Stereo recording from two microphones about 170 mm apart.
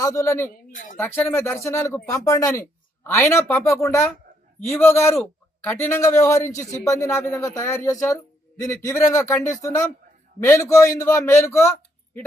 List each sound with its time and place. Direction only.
0.0 s speech: 20° left (ahead or behind)
0.7 s a sound: 50° left (ahead or behind)
0.9 s speech: 10° left (ahead or behind)